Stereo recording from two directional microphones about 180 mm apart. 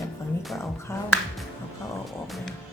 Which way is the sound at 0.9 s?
15° left (ahead or behind).